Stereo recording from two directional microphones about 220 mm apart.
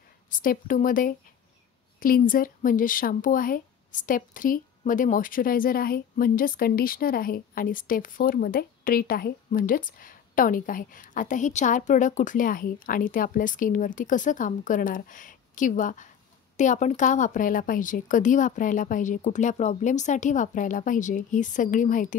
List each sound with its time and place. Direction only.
0.3 s speech: 40° left (ahead or behind)